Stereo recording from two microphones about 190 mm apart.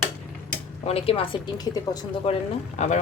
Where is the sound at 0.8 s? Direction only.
30° left (ahead or behind).